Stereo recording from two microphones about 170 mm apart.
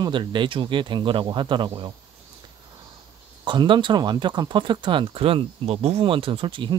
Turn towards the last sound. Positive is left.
turn(degrees=-30)  # may be behind; listen again after turning